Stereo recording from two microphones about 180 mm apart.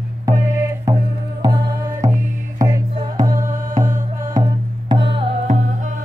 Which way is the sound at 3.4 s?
45° right (ahead or behind).